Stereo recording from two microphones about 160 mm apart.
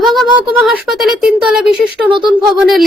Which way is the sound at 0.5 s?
5° right (ahead or behind).